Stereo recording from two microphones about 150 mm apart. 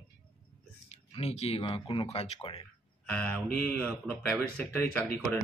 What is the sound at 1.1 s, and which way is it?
Speech, 45° left (ahead or behind).